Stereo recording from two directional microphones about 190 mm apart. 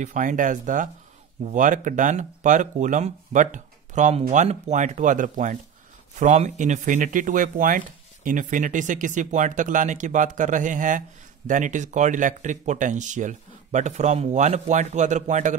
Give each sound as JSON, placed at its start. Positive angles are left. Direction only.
{"t": 0.0, "sound": "speech", "side_deg": -40}